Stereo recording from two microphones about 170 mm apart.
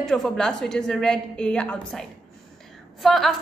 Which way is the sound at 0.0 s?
Centre (ahead or behind).